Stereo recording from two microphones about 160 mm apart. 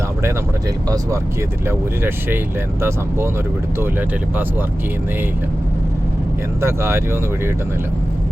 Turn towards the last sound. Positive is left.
turn(degrees=-15)  # may be behind; listen again after turning